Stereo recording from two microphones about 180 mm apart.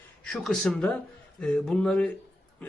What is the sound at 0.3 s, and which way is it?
Speech, centre (ahead or behind).